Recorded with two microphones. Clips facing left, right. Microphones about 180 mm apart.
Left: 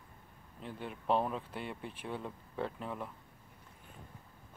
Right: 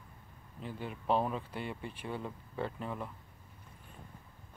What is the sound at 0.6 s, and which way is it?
Speech, centre (ahead or behind).